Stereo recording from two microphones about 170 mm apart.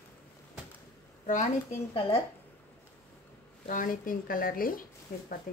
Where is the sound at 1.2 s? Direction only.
45° left (ahead or behind).